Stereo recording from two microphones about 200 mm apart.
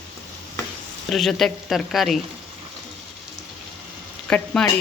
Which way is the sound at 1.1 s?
Centre (ahead or behind).